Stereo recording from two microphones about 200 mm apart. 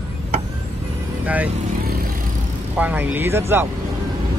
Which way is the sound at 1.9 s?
50° right (ahead or behind).